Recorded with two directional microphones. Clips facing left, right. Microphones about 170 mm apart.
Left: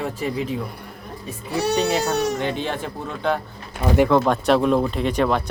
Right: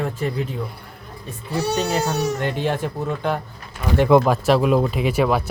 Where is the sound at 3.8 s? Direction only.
30° left (ahead or behind).